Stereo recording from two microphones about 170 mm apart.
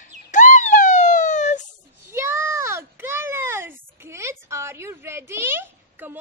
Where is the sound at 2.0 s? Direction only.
15° right (ahead or behind).